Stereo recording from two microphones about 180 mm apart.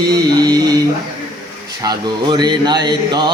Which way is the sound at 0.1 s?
20° right (ahead or behind).